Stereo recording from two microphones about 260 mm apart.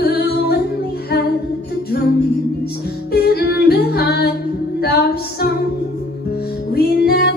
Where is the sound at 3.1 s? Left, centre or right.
Left.